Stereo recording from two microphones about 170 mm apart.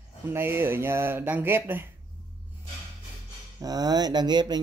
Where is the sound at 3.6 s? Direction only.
20° right (ahead or behind).